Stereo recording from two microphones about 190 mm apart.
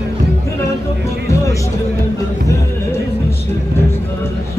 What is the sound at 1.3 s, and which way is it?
Music, 15° left (ahead or behind).